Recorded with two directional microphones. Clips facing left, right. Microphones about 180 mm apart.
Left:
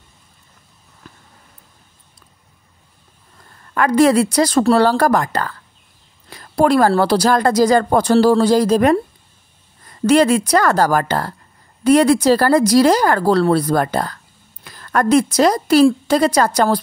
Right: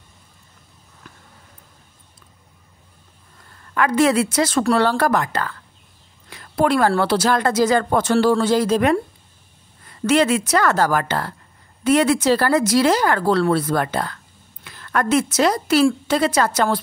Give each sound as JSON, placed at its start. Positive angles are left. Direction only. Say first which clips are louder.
{"t": 3.7, "sound": "speech", "louder": "left 4 dB", "side_deg": 40}